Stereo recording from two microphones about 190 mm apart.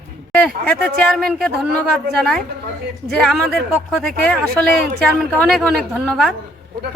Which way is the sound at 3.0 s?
Centre (ahead or behind).